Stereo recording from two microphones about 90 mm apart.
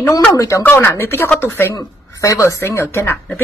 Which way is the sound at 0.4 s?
35° left (ahead or behind).